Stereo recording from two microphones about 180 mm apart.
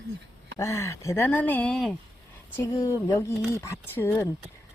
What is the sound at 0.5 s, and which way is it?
Speech, 15° left (ahead or behind).